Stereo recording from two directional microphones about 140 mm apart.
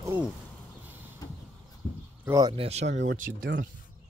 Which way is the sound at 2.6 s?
50° right (ahead or behind).